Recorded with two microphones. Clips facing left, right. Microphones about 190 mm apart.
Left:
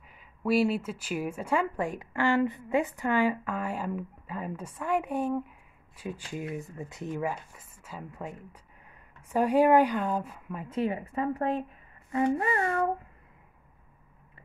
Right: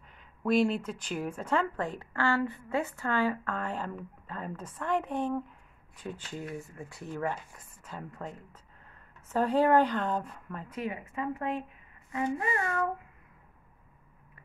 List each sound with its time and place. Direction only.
0.1 s speech: 5° left (ahead or behind)
7.2 s speech: 5° left (ahead or behind)
10.7 s speech: 30° left (ahead or behind)